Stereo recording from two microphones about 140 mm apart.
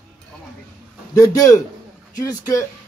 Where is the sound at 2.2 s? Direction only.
20° left (ahead or behind).